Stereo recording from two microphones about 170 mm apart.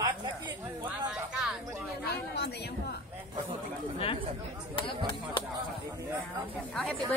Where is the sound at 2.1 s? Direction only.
75° left (ahead or behind).